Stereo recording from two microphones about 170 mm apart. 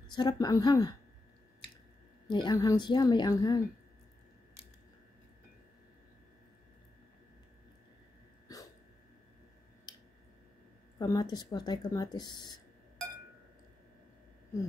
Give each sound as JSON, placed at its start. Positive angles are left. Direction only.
{"t": 0.1, "sound": "speech", "side_deg": 25}
{"t": 2.2, "sound": "speech", "side_deg": 25}
{"t": 11.0, "sound": "speech", "side_deg": 20}